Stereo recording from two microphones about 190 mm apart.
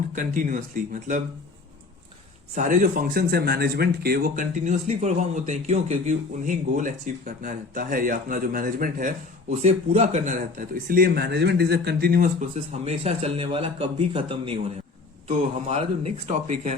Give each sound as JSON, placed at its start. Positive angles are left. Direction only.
{"t": 0.2, "sound": "speech", "side_deg": -45}
{"t": 2.6, "sound": "speech", "side_deg": -45}